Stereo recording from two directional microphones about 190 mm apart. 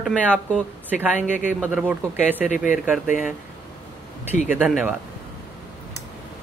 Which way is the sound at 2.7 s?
10° right (ahead or behind).